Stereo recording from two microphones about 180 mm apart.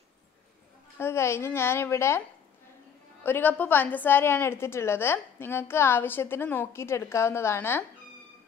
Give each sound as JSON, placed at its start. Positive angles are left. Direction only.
{"t": 0.9, "sound": "a woman's voice", "side_deg": 15}
{"t": 3.3, "sound": "a woman's voice", "side_deg": 10}